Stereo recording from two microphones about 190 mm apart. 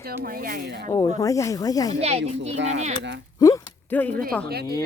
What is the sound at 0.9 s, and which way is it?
Speech, 20° left (ahead or behind).